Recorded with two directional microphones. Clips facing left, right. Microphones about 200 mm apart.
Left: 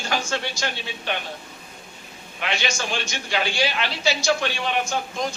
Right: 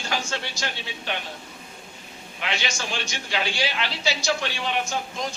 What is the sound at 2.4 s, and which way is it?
A man's voice, 50° left (ahead or behind).